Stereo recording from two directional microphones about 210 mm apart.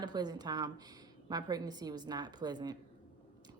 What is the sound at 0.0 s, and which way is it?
A woman's voice, 20° right (ahead or behind).